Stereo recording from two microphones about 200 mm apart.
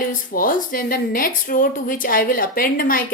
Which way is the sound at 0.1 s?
45° left (ahead or behind).